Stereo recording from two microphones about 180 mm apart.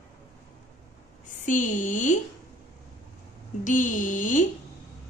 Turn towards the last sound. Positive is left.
turn(degrees=45)  # may be behind; listen again after turning